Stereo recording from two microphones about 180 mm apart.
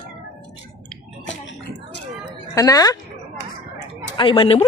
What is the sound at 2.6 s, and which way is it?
Speech, 20° left (ahead or behind).